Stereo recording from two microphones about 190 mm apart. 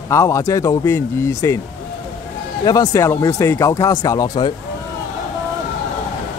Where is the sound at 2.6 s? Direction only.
20° left (ahead or behind).